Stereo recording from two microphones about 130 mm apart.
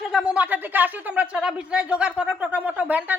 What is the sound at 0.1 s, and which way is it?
A woman's voice, 5° right (ahead or behind).